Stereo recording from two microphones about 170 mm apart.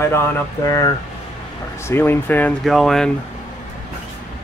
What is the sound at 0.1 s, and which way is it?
Speech, 15° left (ahead or behind).